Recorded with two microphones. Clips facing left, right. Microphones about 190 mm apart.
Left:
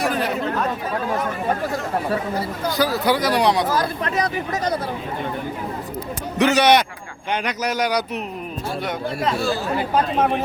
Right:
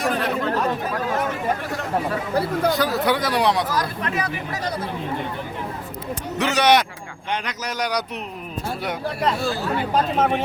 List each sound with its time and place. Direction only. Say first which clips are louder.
0.0 s chatter: left 1 dB; centre (ahead or behind)
2.7 s speech: left 1 dB; centre (ahead or behind)
3.7 s speech: left 3 dB; 25° left (ahead or behind)
4.1 s speech: left 4 dB; 40° left (ahead or behind)
6.4 s a man's voice: left 3 dB; 5° left (ahead or behind)
10.2 s speech: even; centre (ahead or behind)